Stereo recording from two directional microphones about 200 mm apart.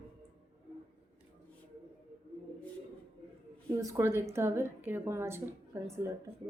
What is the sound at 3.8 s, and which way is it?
A woman's voice, 15° right (ahead or behind).